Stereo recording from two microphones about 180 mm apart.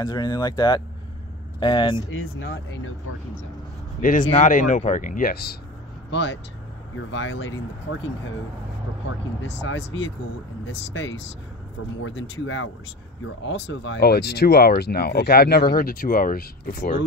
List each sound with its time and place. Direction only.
0.0 s speech: 20° left (ahead or behind)
4.0 s speech: 45° left (ahead or behind)
6.0 s speech: 75° left (ahead or behind)
7.1 s speech: 90° left
9.4 s speech: 90° left; by 16.9 s 50° left (ahead or behind)